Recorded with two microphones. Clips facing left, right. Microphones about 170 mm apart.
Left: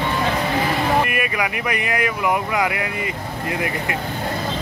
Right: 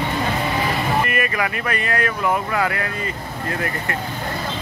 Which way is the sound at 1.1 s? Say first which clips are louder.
Right 1 dB; 10° left (ahead or behind).